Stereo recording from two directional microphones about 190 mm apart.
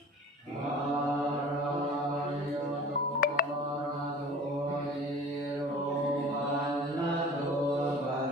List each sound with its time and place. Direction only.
3.2 s music: 45° left (ahead or behind)